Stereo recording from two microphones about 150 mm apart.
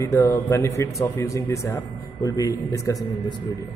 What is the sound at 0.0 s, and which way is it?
Speech, 20° left (ahead or behind).